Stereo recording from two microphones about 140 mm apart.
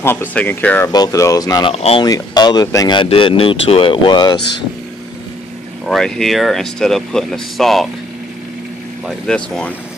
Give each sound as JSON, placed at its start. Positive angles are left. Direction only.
{"t": 0.0, "sound": "speech", "side_deg": 15}
{"t": 0.9, "sound": "speech", "side_deg": 25}
{"t": 1.7, "sound": "speech", "side_deg": 45}
{"t": 2.0, "sound": "speech", "side_deg": 30}
{"t": 5.9, "sound": "speech", "side_deg": 5}
{"t": 9.0, "sound": "speech", "side_deg": 5}